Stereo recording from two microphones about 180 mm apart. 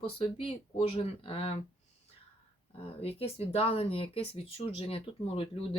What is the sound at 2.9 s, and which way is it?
Speech, 35° left (ahead or behind).